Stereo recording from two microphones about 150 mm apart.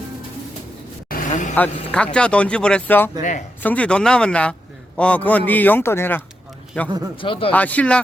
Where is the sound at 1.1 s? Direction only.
55° left (ahead or behind).